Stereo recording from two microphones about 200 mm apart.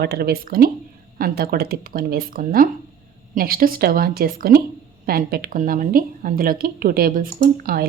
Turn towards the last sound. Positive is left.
turn(degrees=-45)  # may be behind; listen again after turning